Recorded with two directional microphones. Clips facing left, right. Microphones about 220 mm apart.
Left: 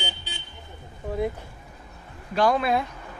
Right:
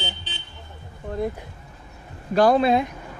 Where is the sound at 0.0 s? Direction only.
10° left (ahead or behind).